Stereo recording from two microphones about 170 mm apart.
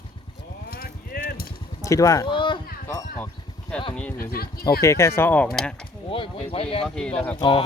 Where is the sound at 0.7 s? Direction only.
60° left (ahead or behind).